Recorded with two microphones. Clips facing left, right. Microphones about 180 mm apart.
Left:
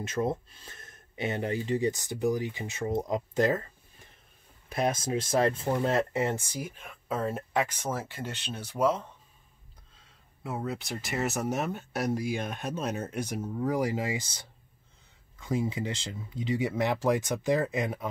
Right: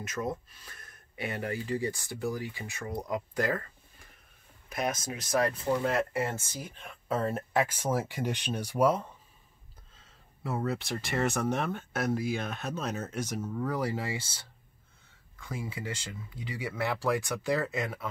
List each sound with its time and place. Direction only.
0.0 s speech: 25° left (ahead or behind); by 9.0 s 10° right (ahead or behind)
10.4 s speech: centre (ahead or behind)
13.4 s speech: 25° left (ahead or behind)
13.7 s speech: 15° left (ahead or behind)